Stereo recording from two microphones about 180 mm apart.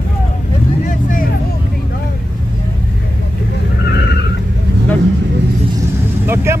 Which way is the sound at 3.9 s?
70° left (ahead or behind).